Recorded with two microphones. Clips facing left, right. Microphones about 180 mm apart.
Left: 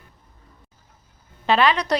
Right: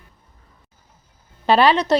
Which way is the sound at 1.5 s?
35° right (ahead or behind).